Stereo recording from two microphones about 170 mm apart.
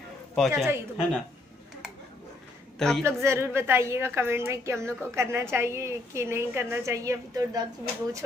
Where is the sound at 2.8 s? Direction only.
Centre (ahead or behind).